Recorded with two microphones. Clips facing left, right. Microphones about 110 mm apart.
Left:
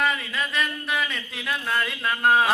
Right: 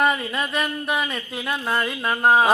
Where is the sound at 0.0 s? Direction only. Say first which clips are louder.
Right 4 dB; 30° right (ahead or behind).